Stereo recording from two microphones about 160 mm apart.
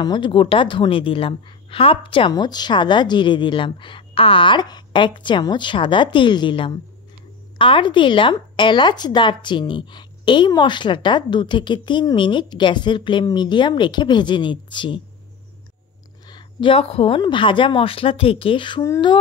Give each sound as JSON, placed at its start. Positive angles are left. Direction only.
{"t": 0.0, "sound": "a woman's voice", "side_deg": 30}
{"t": 16.3, "sound": "a woman's voice", "side_deg": 30}